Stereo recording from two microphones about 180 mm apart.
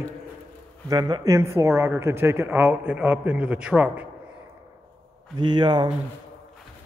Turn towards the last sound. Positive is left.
turn(degrees=-25)  # may be behind; listen again after turning